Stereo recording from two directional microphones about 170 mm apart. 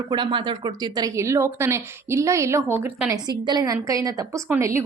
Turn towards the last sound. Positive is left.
turn(degrees=-15)  # may be behind; listen again after turning